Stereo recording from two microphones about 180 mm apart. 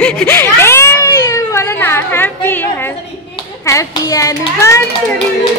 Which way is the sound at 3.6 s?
15° left (ahead or behind).